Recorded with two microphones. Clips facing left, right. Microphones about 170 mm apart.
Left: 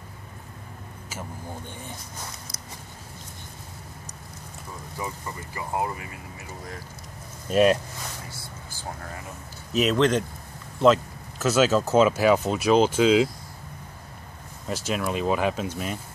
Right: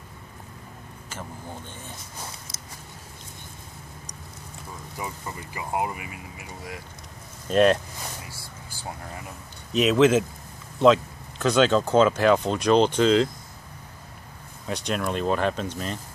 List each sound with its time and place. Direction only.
5.4 s speech: 15° right (ahead or behind)
7.4 s speech: 5° left (ahead or behind)
9.7 s speech: centre (ahead or behind)
14.7 s speech: 5° left (ahead or behind)